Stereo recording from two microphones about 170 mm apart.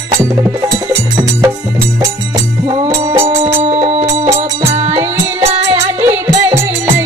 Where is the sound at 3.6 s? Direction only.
40° right (ahead or behind).